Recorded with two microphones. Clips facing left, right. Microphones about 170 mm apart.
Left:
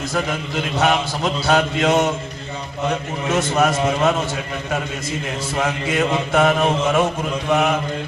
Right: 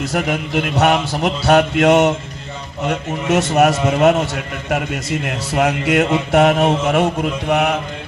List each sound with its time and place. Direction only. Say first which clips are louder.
0.0 s speech: right 3 dB; 70° right (ahead or behind)
3.2 s speech: right 4 dB; 75° right (ahead or behind)
6.6 s mantra: right 2 dB; 65° right (ahead or behind)